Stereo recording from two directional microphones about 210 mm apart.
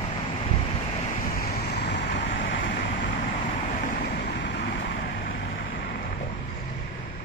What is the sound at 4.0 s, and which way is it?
Vehicle, 50° left (ahead or behind).